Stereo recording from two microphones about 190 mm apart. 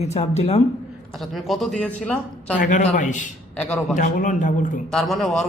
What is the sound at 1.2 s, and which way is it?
A man's voice, centre (ahead or behind).